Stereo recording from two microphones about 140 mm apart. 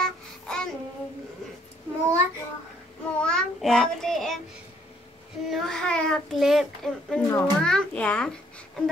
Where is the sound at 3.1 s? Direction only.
5° left (ahead or behind).